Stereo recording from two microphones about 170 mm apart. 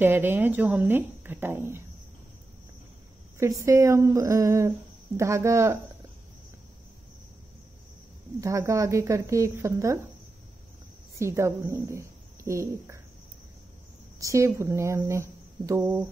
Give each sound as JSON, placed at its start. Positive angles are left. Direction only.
{"t": 0.0, "sound": "speech", "side_deg": -10}
{"t": 3.3, "sound": "speech", "side_deg": -15}
{"t": 8.4, "sound": "speech", "side_deg": -20}
{"t": 11.1, "sound": "speech", "side_deg": -15}
{"t": 14.2, "sound": "speech", "side_deg": -15}